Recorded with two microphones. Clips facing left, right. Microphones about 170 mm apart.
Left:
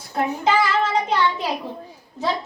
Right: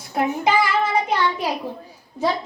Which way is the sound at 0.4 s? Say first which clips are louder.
Left 1 dB; 10° right (ahead or behind).